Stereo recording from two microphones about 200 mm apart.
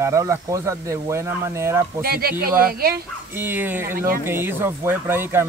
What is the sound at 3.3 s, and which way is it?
Speech, 10° right (ahead or behind).